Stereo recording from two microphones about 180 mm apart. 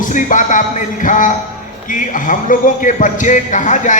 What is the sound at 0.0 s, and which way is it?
Speech, 45° left (ahead or behind).